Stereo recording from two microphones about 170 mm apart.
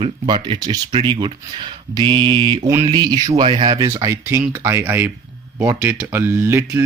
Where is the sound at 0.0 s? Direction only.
30° right (ahead or behind).